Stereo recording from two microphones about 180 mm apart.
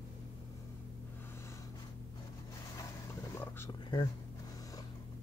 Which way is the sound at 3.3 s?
15° left (ahead or behind).